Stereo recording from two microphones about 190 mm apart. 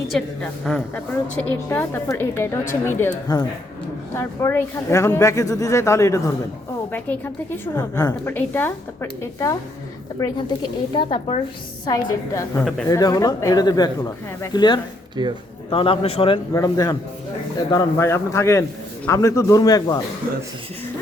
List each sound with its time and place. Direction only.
0.1 s a woman's voice: 5° left (ahead or behind); by 14.8 s 20° left (ahead or behind)
15.2 s speech: 20° right (ahead or behind)
15.7 s a man's voice: 30° left (ahead or behind)